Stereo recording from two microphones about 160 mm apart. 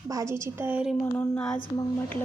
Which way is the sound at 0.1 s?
20° right (ahead or behind).